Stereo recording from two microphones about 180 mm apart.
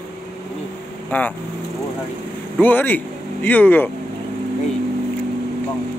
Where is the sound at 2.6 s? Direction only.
10° left (ahead or behind).